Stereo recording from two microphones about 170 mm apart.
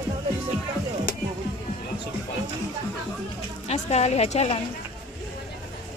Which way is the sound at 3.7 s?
40° left (ahead or behind).